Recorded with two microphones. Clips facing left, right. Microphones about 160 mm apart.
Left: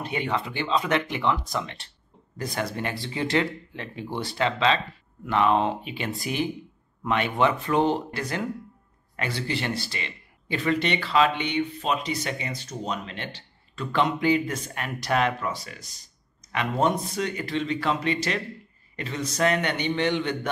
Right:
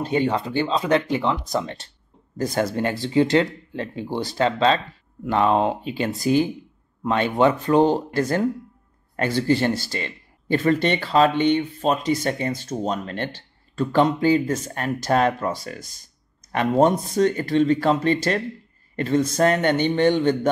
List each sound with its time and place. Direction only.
0.0 s speech: 35° right (ahead or behind)